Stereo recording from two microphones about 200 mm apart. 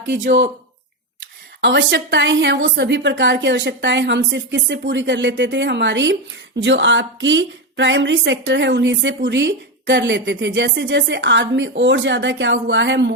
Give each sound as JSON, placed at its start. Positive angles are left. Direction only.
{"t": 1.6, "sound": "speech", "side_deg": -60}